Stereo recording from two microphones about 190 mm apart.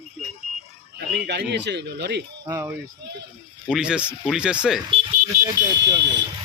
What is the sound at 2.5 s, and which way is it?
Speech, 15° right (ahead or behind).